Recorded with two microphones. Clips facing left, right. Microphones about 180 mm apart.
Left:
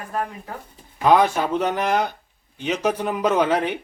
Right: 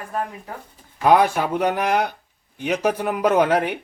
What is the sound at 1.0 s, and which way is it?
Speech, 10° right (ahead or behind).